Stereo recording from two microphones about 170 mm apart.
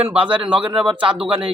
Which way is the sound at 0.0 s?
35° right (ahead or behind).